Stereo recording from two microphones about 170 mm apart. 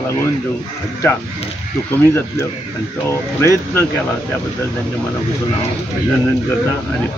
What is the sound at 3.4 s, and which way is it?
Speech, 15° left (ahead or behind).